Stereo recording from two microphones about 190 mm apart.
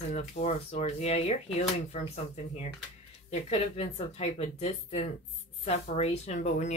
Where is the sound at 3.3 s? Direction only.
30° left (ahead or behind).